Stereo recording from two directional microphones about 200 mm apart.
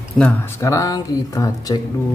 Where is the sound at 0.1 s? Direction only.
5° left (ahead or behind).